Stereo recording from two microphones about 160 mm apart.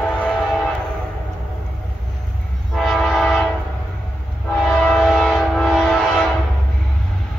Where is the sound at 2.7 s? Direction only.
Centre (ahead or behind).